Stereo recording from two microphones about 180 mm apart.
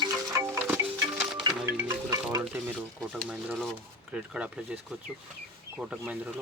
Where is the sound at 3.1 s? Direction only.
Centre (ahead or behind).